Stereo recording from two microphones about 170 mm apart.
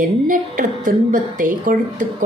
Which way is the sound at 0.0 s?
50° right (ahead or behind).